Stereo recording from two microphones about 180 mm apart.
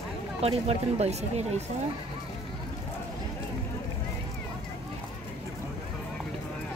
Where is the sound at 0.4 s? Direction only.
35° right (ahead or behind).